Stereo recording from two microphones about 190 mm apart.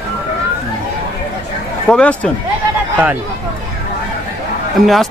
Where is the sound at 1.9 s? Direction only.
5° left (ahead or behind).